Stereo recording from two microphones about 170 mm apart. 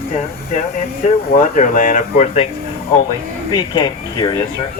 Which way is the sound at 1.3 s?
50° left (ahead or behind).